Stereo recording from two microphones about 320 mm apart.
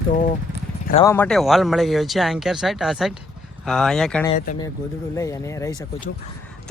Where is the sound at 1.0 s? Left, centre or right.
Centre.